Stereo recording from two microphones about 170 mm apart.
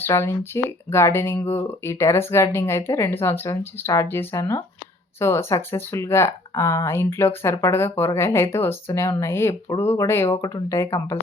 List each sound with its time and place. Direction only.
0.0 s speech: 15° left (ahead or behind)